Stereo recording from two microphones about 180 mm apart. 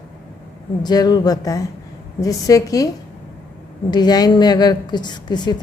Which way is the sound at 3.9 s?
20° left (ahead or behind).